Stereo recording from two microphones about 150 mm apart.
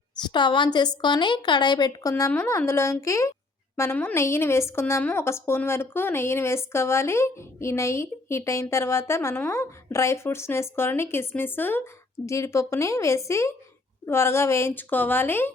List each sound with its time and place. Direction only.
0.2 s a woman's voice: 30° left (ahead or behind); by 15.5 s 15° left (ahead or behind)